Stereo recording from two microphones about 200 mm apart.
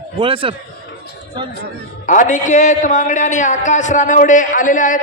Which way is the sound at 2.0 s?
40° left (ahead or behind).